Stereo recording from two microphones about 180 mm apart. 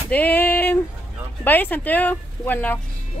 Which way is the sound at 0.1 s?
10° left (ahead or behind).